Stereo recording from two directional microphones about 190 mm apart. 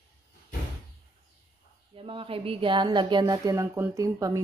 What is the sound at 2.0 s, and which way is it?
Speech, 30° right (ahead or behind).